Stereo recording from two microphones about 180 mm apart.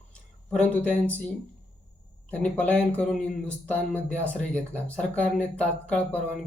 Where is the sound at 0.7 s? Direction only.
10° left (ahead or behind).